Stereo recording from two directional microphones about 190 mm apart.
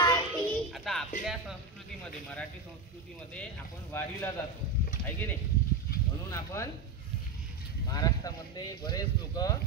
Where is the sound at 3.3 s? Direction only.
10° left (ahead or behind).